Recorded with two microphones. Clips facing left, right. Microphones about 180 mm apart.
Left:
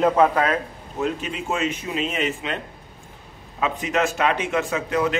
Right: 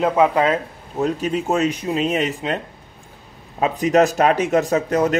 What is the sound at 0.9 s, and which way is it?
Speech, 40° right (ahead or behind).